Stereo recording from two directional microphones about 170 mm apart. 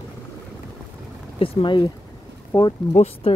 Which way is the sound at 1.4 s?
30° left (ahead or behind).